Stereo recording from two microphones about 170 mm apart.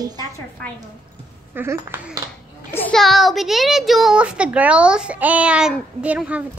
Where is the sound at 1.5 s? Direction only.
15° right (ahead or behind).